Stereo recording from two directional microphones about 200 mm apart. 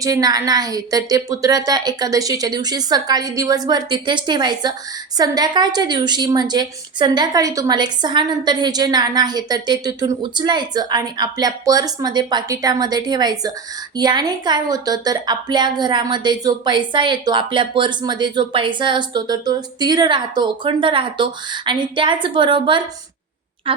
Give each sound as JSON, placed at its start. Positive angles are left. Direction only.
{"t": 0.0, "sound": "speech", "side_deg": -20}